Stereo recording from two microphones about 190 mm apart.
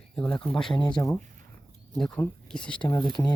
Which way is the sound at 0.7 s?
25° left (ahead or behind).